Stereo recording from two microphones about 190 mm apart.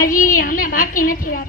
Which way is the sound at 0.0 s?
50° left (ahead or behind).